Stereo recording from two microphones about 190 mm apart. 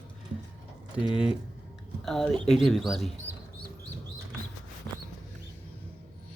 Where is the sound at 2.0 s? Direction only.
Centre (ahead or behind).